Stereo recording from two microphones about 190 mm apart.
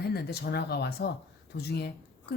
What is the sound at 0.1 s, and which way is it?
Speech, 60° left (ahead or behind).